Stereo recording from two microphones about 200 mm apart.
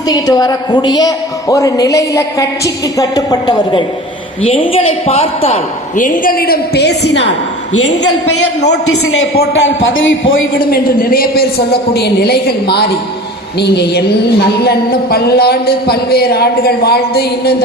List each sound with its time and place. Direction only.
0.1 s a woman's voice: 20° left (ahead or behind)
6.0 s a woman's voice: 40° left (ahead or behind); by 7.3 s 60° left (ahead or behind)
9.4 s a man's voice: 70° left (ahead or behind)
10.6 s a woman's voice: 50° left (ahead or behind)